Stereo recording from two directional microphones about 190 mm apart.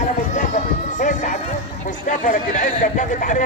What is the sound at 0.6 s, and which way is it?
Music, 40° left (ahead or behind).